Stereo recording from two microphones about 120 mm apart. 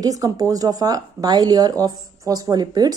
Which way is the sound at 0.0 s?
30° right (ahead or behind).